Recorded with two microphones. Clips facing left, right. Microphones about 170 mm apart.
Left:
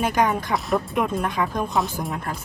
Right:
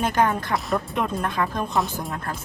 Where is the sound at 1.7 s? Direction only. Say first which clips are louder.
Left 1 dB; centre (ahead or behind).